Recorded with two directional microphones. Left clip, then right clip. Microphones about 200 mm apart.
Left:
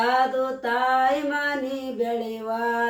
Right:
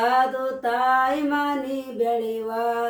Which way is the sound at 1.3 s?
20° right (ahead or behind).